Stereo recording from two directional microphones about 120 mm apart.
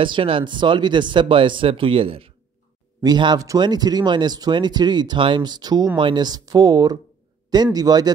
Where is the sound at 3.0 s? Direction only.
35° right (ahead or behind).